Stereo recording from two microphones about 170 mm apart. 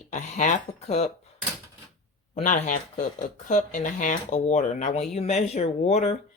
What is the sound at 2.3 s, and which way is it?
Speech, 50° left (ahead or behind).